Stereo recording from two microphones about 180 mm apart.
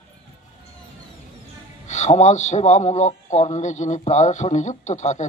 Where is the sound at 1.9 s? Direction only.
40° left (ahead or behind).